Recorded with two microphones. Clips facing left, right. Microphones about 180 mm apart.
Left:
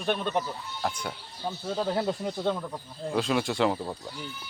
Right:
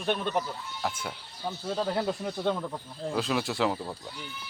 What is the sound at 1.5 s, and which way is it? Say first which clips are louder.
Speech: left 1 dB; 10° left (ahead or behind).